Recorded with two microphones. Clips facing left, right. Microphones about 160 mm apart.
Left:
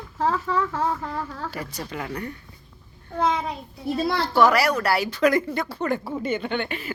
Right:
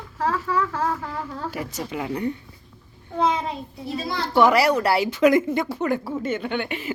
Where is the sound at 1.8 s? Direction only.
15° right (ahead or behind).